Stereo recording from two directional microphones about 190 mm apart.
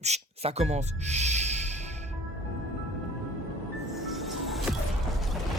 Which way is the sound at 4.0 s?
Centre (ahead or behind).